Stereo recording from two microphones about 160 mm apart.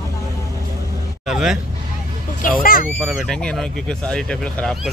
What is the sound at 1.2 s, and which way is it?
Vehicle, 5° right (ahead or behind).